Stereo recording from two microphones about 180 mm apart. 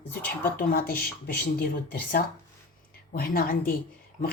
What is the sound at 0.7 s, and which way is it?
A woman's voice, 55° left (ahead or behind).